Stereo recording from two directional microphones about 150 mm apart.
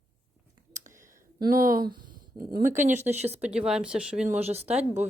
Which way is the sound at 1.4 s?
70° right (ahead or behind).